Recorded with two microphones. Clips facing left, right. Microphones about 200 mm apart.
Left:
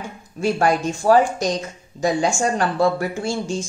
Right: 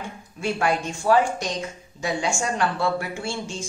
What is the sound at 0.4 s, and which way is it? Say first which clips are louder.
A woman's voice: left 5 dB; 40° left (ahead or behind).